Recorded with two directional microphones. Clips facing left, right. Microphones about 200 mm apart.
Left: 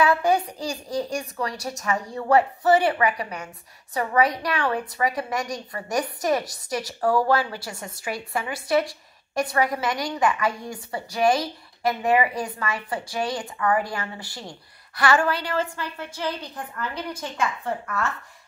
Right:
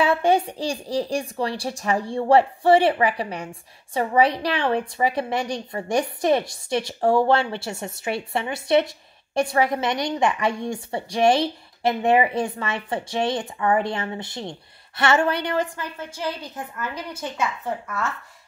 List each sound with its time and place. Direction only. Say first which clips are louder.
0.0 s a woman's voice: right 1 dB; 30° right (ahead or behind); by 17.9 s 5° right (ahead or behind)